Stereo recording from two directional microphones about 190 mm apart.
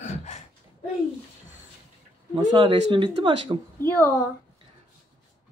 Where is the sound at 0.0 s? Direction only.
40° left (ahead or behind).